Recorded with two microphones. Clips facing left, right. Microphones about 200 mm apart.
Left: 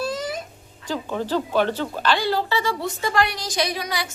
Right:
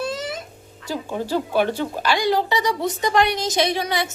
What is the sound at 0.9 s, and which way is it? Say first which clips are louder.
Speech: even; 10° right (ahead or behind).